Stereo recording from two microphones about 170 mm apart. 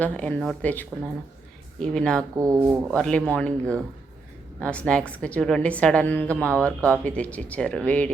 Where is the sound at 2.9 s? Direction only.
5° left (ahead or behind).